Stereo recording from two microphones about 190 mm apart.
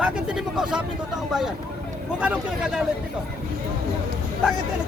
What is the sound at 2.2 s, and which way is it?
Speech, 5° right (ahead or behind).